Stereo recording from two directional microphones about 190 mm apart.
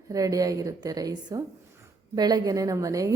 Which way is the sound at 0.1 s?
20° right (ahead or behind).